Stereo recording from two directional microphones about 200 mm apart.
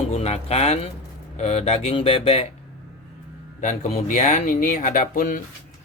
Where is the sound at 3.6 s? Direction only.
35° left (ahead or behind).